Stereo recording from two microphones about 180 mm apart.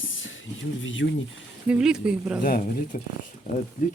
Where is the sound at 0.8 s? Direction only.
90° left.